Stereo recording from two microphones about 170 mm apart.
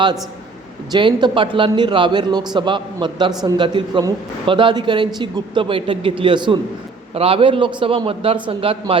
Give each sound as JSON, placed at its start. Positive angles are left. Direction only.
{"t": 0.9, "sound": "a man's voice", "side_deg": -30}